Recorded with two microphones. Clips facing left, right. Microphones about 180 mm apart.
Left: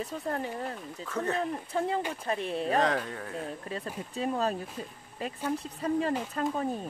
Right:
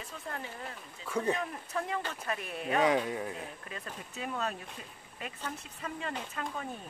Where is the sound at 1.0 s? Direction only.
10° right (ahead or behind).